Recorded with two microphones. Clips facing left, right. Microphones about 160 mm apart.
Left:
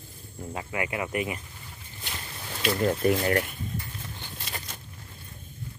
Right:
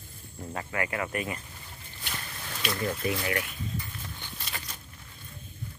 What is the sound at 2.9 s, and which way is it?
Speech, 45° left (ahead or behind).